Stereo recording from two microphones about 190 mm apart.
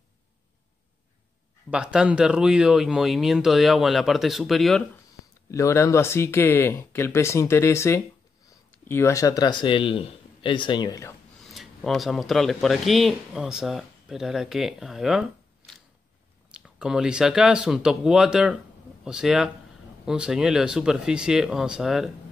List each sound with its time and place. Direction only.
1.7 s speech: 5° right (ahead or behind)
5.5 s speech: 15° left (ahead or behind)
11.4 s speech: centre (ahead or behind)